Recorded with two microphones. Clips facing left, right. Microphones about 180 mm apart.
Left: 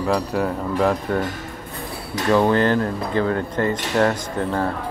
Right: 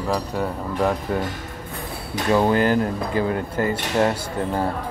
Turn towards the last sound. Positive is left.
turn(degrees=-15)  # may be behind; listen again after turning